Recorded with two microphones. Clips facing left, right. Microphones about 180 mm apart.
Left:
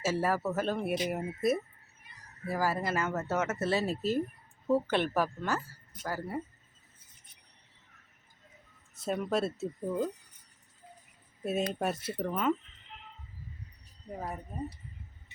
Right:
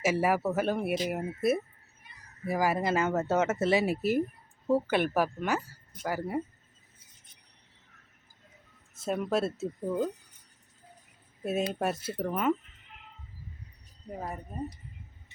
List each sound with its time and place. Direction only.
0.0 s a woman's voice: 15° right (ahead or behind)
2.5 s a woman's voice: 15° right (ahead or behind)
9.0 s speech: centre (ahead or behind)
11.4 s speech: 5° right (ahead or behind)
14.1 s a woman's voice: 5° right (ahead or behind)